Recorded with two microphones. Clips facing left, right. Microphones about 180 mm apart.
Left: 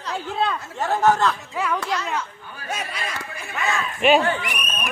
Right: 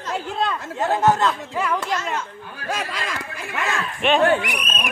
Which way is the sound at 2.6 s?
90° right.